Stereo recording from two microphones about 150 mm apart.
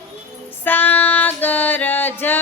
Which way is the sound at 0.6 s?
10° left (ahead or behind).